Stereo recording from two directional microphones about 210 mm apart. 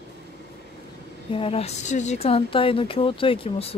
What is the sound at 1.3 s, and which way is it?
A woman's voice, 25° left (ahead or behind).